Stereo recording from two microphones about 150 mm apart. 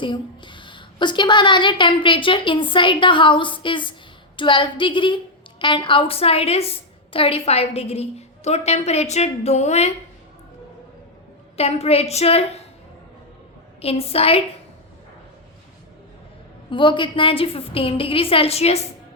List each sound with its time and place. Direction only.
0.0 s a woman's voice: 30° left (ahead or behind); by 9.9 s 45° left (ahead or behind)
11.5 s a woman's voice: 45° left (ahead or behind)
13.8 s a woman's voice: 40° left (ahead or behind)
16.6 s a woman's voice: 35° left (ahead or behind)